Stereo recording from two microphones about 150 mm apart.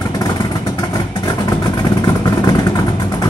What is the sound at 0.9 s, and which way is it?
Vehicle, 25° left (ahead or behind).